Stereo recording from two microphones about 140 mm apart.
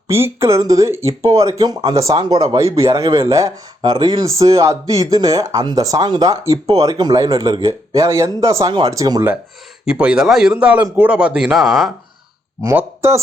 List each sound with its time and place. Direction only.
0.1 s speech: 20° right (ahead or behind)
9.8 s speech: 5° right (ahead or behind)
12.6 s speech: 20° right (ahead or behind)